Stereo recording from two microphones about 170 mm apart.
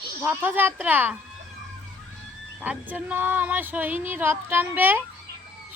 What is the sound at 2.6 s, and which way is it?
Speech, 10° right (ahead or behind).